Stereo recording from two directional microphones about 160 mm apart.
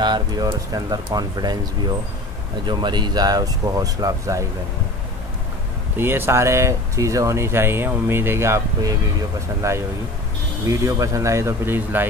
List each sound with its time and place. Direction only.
0.0 s speech: 30° right (ahead or behind)
2.6 s speech: 30° right (ahead or behind)
5.9 s speech: 15° right (ahead or behind)